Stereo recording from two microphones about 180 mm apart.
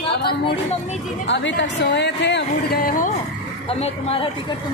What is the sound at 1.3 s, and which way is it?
A woman's voice, 80° left.